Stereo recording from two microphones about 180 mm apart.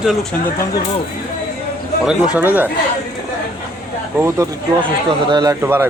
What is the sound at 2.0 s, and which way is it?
Speech, 5° right (ahead or behind).